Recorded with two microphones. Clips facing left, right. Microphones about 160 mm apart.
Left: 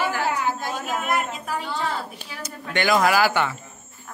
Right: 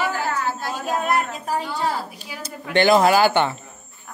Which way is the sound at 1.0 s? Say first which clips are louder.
Right 3 dB; 35° right (ahead or behind).